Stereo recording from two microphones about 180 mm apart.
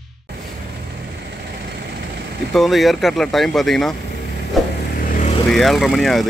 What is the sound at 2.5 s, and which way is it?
Speech, centre (ahead or behind).